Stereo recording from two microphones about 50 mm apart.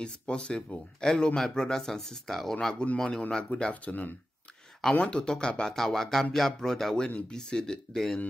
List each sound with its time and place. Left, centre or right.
0.0 s speech: centre
2.5 s speech: left
3.7 s speech: left
4.9 s speech: left
7.1 s speech: left
7.3 s speech: centre